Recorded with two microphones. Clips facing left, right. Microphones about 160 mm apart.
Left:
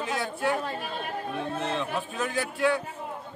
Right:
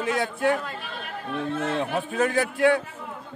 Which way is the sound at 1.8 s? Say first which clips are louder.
Right 6 dB; 60° right (ahead or behind).